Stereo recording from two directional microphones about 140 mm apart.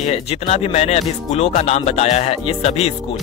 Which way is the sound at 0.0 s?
50° left (ahead or behind).